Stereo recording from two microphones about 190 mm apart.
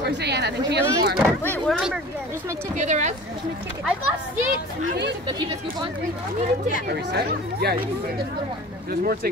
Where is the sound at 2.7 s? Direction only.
40° right (ahead or behind).